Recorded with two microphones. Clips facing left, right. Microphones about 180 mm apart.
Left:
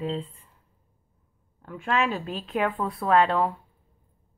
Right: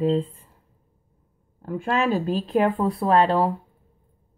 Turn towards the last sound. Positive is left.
turn(degrees=-35)  # may be behind; listen again after turning